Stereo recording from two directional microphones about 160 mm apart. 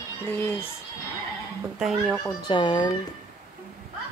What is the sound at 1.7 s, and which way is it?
Speech, centre (ahead or behind).